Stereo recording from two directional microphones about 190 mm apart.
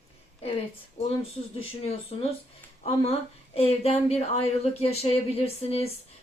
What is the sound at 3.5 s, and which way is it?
Speech, 35° left (ahead or behind).